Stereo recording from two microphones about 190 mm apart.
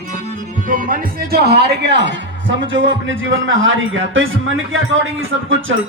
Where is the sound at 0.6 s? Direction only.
45° right (ahead or behind).